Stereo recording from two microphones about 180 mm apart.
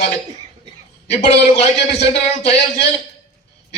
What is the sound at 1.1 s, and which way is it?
Speech, 40° left (ahead or behind).